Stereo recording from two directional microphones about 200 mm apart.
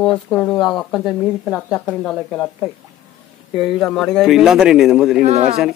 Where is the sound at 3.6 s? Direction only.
Centre (ahead or behind).